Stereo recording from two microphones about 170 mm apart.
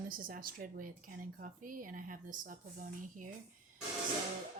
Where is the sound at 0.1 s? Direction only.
55° right (ahead or behind).